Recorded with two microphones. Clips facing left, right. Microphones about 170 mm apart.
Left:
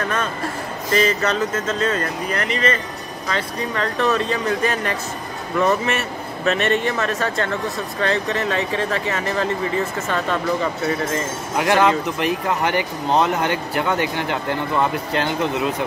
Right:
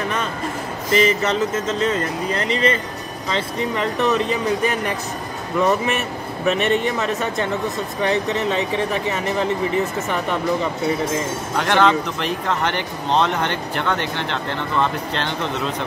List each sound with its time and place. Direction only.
0.9 s speech: 20° right (ahead or behind)
11.5 s speech: 10° left (ahead or behind)